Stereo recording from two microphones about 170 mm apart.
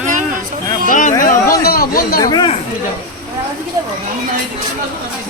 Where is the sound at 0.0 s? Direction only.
45° right (ahead or behind).